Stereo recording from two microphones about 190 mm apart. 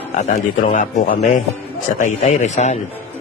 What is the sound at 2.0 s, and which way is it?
Speech, 35° left (ahead or behind).